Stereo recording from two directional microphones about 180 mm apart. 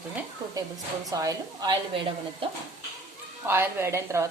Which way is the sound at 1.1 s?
20° right (ahead or behind).